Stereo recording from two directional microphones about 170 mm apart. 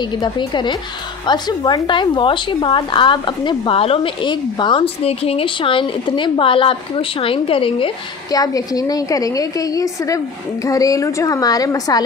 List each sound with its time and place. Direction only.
0.2 s speech: 25° left (ahead or behind)